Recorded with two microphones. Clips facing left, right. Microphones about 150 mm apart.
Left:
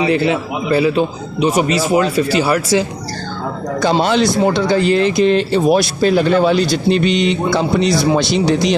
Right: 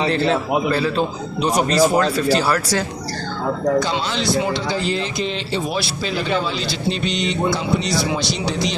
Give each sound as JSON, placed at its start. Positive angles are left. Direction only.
{"t": 0.0, "sound": "a man's voice", "side_deg": 10}
{"t": 4.0, "sound": "speech", "side_deg": 60}